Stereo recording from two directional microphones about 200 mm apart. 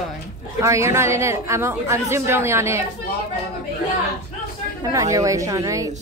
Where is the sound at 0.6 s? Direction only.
15° right (ahead or behind).